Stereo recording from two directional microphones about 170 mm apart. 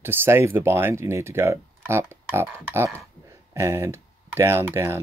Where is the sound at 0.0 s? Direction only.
15° right (ahead or behind).